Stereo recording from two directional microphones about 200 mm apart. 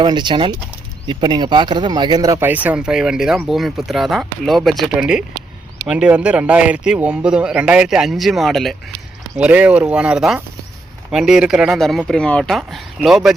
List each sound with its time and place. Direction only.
0.0 s speech: 20° right (ahead or behind); by 13.3 s centre (ahead or behind)